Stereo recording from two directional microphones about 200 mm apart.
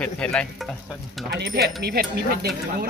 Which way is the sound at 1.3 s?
55° right (ahead or behind).